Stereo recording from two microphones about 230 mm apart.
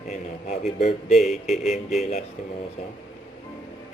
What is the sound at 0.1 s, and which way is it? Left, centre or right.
A man's voice, left.